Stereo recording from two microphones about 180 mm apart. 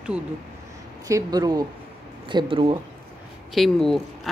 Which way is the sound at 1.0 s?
20° right (ahead or behind).